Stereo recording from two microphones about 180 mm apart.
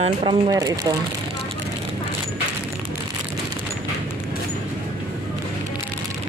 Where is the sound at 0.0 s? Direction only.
30° right (ahead or behind).